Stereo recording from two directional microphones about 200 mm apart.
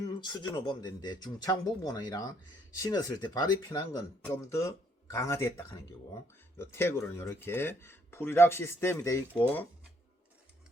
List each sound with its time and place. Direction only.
0.0 s speech: 20° left (ahead or behind)